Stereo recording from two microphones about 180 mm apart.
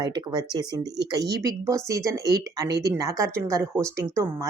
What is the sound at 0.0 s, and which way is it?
A woman's voice, 25° right (ahead or behind).